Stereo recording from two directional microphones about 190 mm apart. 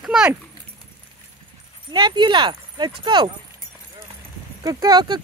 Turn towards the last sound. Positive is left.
turn(degrees=-20)  # may be behind; listen again after turning